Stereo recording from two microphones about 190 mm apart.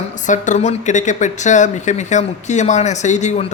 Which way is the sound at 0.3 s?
40° left (ahead or behind).